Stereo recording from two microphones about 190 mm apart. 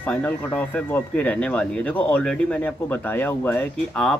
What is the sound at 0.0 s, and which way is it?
Speech, 5° left (ahead or behind).